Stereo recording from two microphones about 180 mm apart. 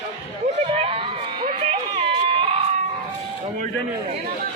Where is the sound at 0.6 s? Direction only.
30° right (ahead or behind).